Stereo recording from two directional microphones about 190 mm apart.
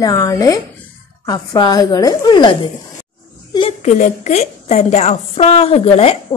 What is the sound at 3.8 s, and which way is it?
A woman's voice, 40° left (ahead or behind).